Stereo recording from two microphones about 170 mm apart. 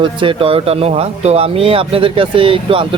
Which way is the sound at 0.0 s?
30° right (ahead or behind).